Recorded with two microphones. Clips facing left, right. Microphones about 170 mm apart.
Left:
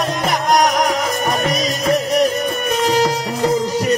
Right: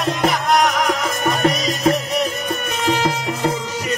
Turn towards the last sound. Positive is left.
turn(degrees=40)  # may be behind; listen again after turning